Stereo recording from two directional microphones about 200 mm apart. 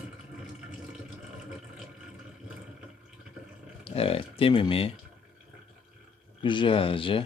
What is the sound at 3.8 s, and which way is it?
Speech, 30° left (ahead or behind).